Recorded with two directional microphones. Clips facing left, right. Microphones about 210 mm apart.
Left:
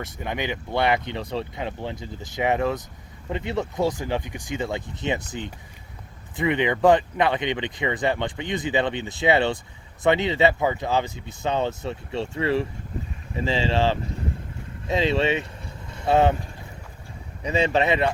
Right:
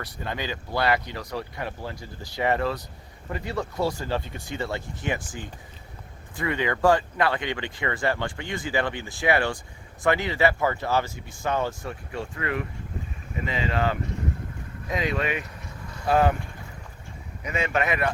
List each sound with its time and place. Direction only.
0.0 s speech: 20° left (ahead or behind)
17.4 s speech: 30° left (ahead or behind)